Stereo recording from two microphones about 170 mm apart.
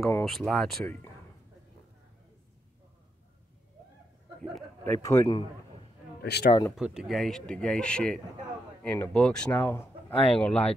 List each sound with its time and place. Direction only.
0.1 s speech: 5° left (ahead or behind)
4.4 s a sound: 5° left (ahead or behind)
4.9 s speech: 15° left (ahead or behind)
5.3 s a man's voice: 30° left (ahead or behind)
6.2 s speech: 75° left (ahead or behind)
6.8 s speech: 5° right (ahead or behind)